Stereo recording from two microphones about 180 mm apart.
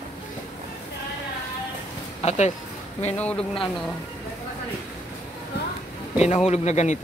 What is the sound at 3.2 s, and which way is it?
Speech, 5° left (ahead or behind).